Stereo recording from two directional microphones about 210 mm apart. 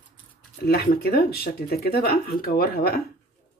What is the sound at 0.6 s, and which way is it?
Speech, 45° left (ahead or behind).